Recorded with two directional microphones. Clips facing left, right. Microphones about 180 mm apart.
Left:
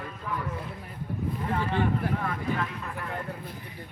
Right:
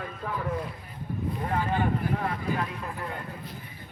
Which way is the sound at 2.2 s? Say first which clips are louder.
Right 1 dB; 35° right (ahead or behind).